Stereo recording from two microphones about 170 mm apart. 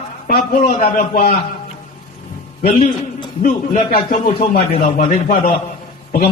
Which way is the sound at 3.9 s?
55° left (ahead or behind).